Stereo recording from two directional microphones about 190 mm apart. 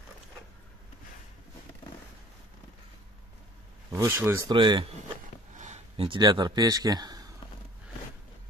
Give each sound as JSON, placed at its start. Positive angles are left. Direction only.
{"t": 3.9, "sound": "speech", "side_deg": -15}
{"t": 4.5, "sound": "speech", "side_deg": -25}
{"t": 5.5, "sound": "speech", "side_deg": -40}